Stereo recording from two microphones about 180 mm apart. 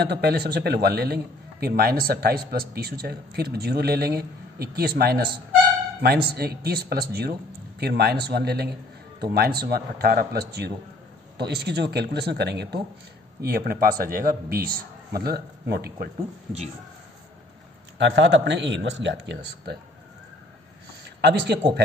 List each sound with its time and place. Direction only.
0.0 s a man's voice: 65° right (ahead or behind)
17.9 s speech: 75° right (ahead or behind)
21.2 s speech: 65° right (ahead or behind)